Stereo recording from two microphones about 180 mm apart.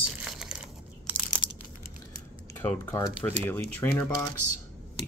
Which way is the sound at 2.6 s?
15° left (ahead or behind).